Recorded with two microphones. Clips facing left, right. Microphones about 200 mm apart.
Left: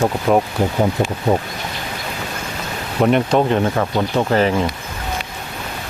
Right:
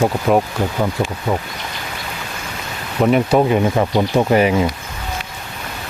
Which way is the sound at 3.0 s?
5° right (ahead or behind).